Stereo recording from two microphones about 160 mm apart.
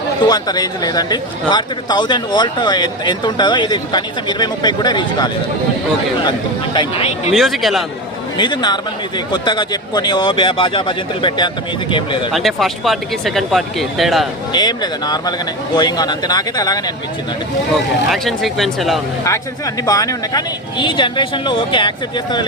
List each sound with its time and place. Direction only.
0.3 s speech: 25° left (ahead or behind)
7.3 s speech: centre (ahead or behind)
8.4 s speech: 25° left (ahead or behind)
12.3 s speech: centre (ahead or behind)
14.5 s speech: 25° left (ahead or behind)
18.1 s speech: centre (ahead or behind)
19.2 s speech: 20° left (ahead or behind)